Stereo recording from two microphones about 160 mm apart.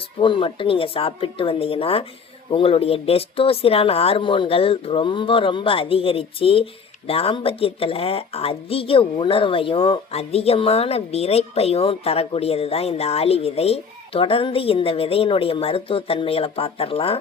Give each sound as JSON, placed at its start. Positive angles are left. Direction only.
{"t": 0.2, "sound": "a woman's voice", "side_deg": 30}